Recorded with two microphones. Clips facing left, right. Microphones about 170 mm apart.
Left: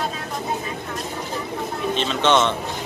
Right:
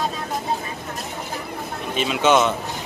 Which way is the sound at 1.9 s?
10° right (ahead or behind).